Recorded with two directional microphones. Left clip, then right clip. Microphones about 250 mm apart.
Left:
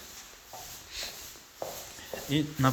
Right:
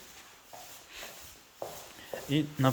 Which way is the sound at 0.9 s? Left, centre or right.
Centre.